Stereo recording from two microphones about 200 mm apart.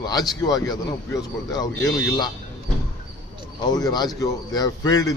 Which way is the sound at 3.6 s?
20° left (ahead or behind).